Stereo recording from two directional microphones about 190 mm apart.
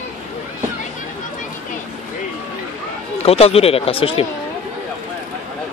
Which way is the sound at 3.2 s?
30° left (ahead or behind).